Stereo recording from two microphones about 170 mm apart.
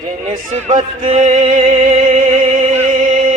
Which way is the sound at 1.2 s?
50° right (ahead or behind).